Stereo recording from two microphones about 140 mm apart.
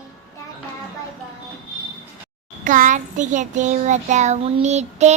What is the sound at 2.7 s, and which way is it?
Child singing, 65° right (ahead or behind).